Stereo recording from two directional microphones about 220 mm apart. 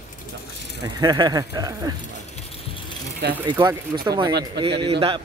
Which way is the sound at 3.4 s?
20° right (ahead or behind).